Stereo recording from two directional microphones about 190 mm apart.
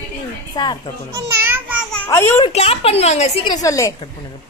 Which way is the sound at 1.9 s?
10° left (ahead or behind).